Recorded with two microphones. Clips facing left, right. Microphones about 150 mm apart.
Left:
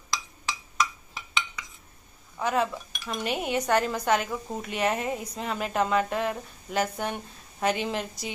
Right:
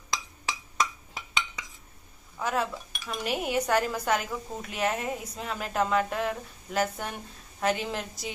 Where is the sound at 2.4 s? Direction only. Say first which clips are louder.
Left 3 dB; centre (ahead or behind).